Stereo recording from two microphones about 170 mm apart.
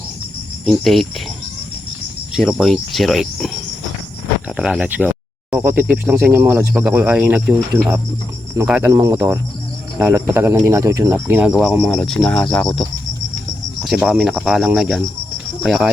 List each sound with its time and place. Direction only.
0.6 s speech: centre (ahead or behind)
2.3 s cricket: centre (ahead or behind)
4.4 s speech: 5° right (ahead or behind)
8.9 s speech: 20° right (ahead or behind)
11.9 s cricket: 5° left (ahead or behind)